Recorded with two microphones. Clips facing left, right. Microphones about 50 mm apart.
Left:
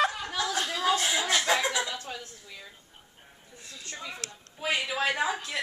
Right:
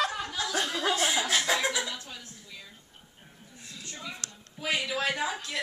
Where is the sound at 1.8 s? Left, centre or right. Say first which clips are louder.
Left 3 dB; left.